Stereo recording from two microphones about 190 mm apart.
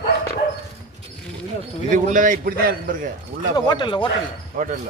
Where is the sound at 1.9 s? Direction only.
40° right (ahead or behind).